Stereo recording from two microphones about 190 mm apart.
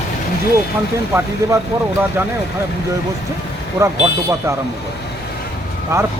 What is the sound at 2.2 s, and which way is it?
Speech, 10° right (ahead or behind).